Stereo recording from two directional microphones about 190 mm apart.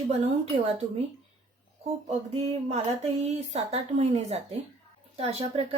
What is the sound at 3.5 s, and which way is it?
A woman's voice, 35° right (ahead or behind).